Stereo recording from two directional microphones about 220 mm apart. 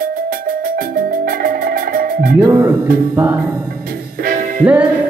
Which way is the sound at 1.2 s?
45° right (ahead or behind).